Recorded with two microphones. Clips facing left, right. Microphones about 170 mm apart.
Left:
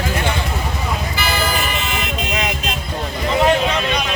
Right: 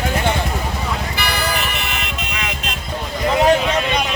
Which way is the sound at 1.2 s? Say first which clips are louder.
Left 2 dB; 70° right (ahead or behind).